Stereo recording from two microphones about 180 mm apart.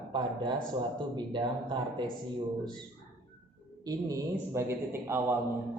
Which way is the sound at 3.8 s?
15° right (ahead or behind).